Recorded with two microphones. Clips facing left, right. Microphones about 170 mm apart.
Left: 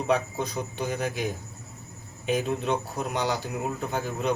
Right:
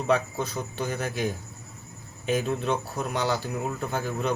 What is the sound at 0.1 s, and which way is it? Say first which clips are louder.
Speech: right 1 dB; 15° left (ahead or behind).